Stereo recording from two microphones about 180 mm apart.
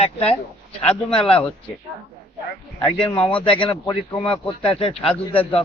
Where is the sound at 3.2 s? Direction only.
30° left (ahead or behind).